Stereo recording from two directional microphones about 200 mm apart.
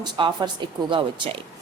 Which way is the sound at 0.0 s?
25° right (ahead or behind).